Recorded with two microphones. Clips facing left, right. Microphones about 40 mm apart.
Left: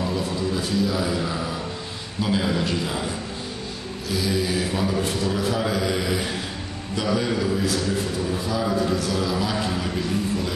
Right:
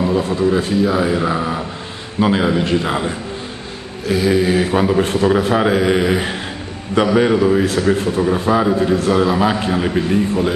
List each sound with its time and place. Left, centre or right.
0.0 s a sound: right
0.5 s a man's voice: right
2.4 s a man's voice: right